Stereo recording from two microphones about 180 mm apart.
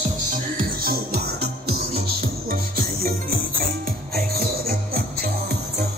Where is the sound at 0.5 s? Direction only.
55° right (ahead or behind).